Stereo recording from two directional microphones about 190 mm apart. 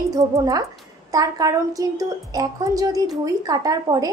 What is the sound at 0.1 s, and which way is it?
A woman's voice, 15° right (ahead or behind).